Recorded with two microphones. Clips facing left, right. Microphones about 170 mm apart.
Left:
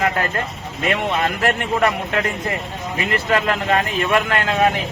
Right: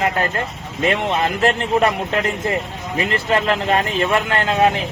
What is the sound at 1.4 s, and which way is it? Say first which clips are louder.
Speech: right 4 dB; 25° right (ahead or behind).